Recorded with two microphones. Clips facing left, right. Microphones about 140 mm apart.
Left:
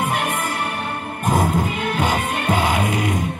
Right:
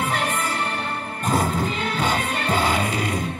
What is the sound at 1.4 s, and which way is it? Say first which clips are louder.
Music: left 3 dB; 50° left (ahead or behind).